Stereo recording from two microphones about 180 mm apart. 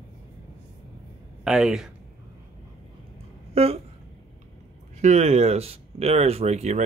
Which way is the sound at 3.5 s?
35° right (ahead or behind).